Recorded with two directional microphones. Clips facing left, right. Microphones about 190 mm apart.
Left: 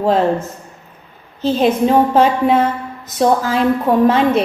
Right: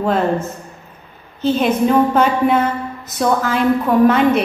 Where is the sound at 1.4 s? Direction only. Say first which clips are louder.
Left 1 dB; 30° left (ahead or behind).